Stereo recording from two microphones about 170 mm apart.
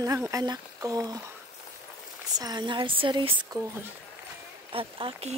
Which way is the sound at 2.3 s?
25° right (ahead or behind).